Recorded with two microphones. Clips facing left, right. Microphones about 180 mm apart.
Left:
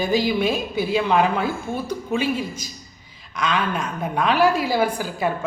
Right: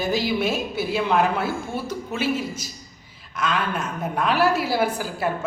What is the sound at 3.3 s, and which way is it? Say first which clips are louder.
A man's voice: left 2 dB; 5° right (ahead or behind).